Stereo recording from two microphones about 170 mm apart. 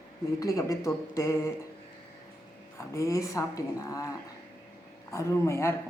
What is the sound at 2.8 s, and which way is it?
Speech, 15° left (ahead or behind).